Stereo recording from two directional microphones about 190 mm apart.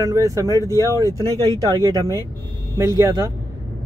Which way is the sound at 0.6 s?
15° left (ahead or behind).